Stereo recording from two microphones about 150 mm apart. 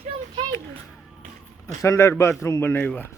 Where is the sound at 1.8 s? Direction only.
20° left (ahead or behind).